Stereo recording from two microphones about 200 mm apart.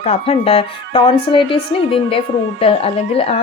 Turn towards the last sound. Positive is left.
turn(degrees=30)  # may be behind; listen again after turning